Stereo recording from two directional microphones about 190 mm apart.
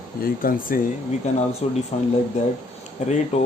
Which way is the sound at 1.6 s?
35° left (ahead or behind).